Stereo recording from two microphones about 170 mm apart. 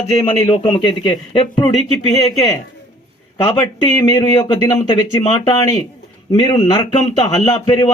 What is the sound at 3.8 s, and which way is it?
Speech, 25° left (ahead or behind).